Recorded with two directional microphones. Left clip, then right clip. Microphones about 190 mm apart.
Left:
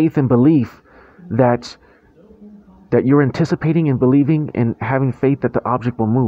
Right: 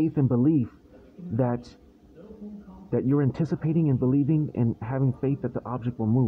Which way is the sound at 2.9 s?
25° left (ahead or behind).